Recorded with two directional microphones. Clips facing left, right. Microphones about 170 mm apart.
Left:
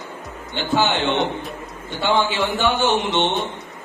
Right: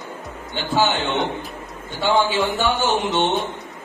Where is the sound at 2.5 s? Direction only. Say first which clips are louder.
Left 1 dB; 40° right (ahead or behind).